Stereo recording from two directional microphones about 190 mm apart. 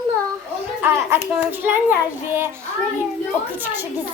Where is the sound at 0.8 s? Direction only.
10° right (ahead or behind).